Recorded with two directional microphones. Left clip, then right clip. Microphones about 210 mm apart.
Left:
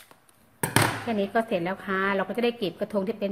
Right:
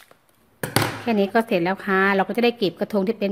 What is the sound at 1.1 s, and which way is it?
A woman's voice, 45° right (ahead or behind).